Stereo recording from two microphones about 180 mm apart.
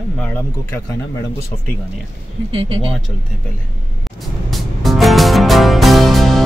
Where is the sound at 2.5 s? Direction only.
30° right (ahead or behind).